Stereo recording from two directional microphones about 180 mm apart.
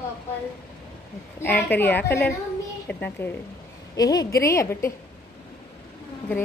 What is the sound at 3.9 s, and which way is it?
A woman's voice, 20° left (ahead or behind).